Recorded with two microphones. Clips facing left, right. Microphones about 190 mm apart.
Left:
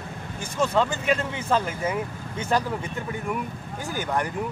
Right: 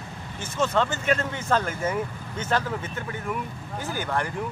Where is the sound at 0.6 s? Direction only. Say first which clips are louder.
Left 1 dB; 10° left (ahead or behind).